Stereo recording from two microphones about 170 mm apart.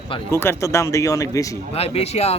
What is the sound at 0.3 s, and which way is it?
Speech, 15° left (ahead or behind).